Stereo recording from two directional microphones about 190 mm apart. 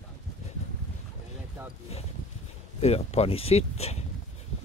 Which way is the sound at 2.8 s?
35° left (ahead or behind).